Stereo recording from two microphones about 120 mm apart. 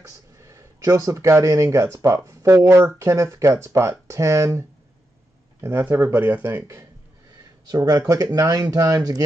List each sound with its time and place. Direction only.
0.4 s speech: 25° right (ahead or behind)
7.6 s speech: 30° right (ahead or behind)